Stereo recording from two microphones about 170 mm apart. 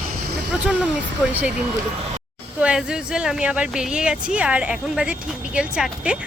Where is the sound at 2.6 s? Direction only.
5° right (ahead or behind).